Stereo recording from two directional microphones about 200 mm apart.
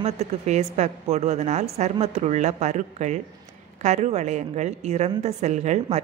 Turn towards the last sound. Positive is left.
turn(degrees=-35)  # may be behind; listen again after turning